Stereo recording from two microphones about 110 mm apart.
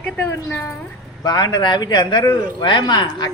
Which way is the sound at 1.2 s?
40° left (ahead or behind).